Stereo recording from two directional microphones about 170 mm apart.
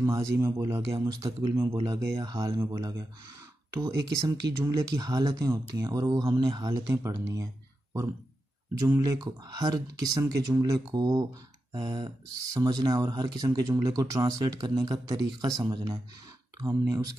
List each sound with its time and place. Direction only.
0.0 s a man's voice: 20° right (ahead or behind)
8.7 s speech: 20° right (ahead or behind)